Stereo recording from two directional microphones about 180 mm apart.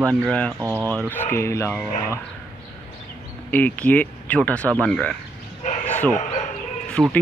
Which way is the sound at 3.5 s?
10° left (ahead or behind).